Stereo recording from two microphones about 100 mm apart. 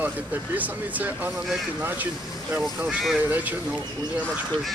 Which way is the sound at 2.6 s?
Centre (ahead or behind).